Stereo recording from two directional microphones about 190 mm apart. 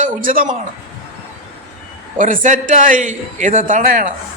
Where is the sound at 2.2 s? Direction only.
40° right (ahead or behind).